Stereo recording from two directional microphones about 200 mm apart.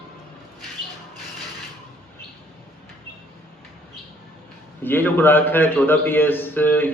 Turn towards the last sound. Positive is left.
turn(degrees=10)  # may be behind; listen again after turning